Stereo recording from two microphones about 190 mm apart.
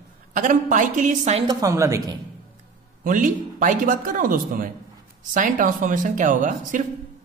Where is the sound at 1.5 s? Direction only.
15° right (ahead or behind).